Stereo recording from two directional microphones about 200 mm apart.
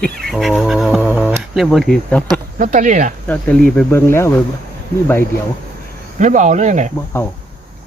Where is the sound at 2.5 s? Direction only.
40° right (ahead or behind).